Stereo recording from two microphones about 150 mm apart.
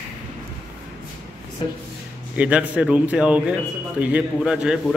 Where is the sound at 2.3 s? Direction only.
10° right (ahead or behind).